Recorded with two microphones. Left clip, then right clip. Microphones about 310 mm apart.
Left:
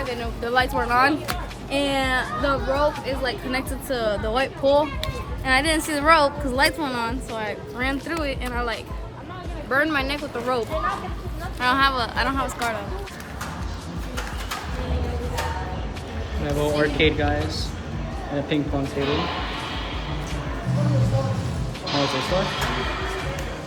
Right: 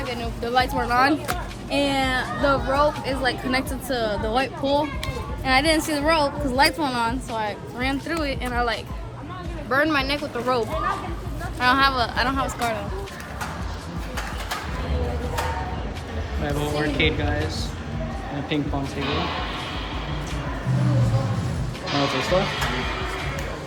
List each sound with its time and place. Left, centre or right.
0.1 s speech: centre
2.7 s speech: right
3.5 s speech: centre
6.6 s speech: centre
11.6 s speech: centre
16.6 s speech: centre
21.8 s speech: centre